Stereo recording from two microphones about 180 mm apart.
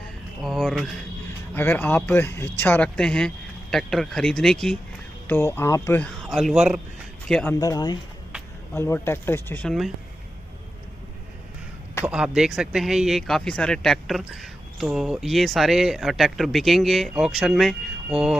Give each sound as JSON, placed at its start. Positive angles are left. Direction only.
{"t": 0.4, "sound": "speech", "side_deg": 0}
{"t": 7.5, "sound": "speech", "side_deg": 20}
{"t": 12.1, "sound": "speech", "side_deg": -5}